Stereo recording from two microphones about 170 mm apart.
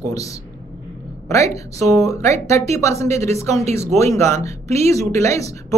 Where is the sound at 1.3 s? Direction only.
20° left (ahead or behind).